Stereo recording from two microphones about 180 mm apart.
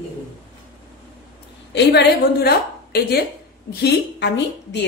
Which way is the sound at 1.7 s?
70° left (ahead or behind).